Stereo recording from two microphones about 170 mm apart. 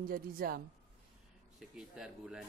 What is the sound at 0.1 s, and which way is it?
Speech, 60° right (ahead or behind).